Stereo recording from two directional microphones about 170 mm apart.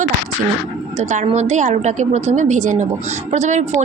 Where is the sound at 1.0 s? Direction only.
45° right (ahead or behind).